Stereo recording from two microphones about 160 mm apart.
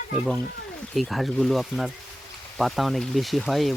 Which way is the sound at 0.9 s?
Centre (ahead or behind).